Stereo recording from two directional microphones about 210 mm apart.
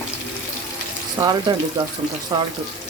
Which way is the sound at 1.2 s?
20° right (ahead or behind).